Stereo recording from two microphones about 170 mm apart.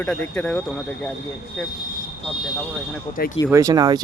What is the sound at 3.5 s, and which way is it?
Speech, 20° right (ahead or behind).